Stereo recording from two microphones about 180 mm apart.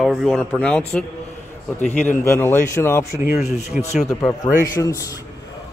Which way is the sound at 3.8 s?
45° left (ahead or behind).